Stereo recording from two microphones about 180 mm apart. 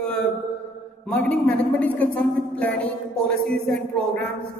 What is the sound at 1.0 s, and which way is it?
A woman's voice, 5° left (ahead or behind).